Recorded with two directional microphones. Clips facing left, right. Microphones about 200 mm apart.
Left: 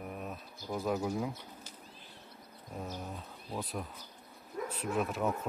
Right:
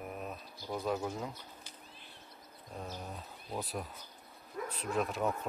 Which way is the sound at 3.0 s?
Centre (ahead or behind).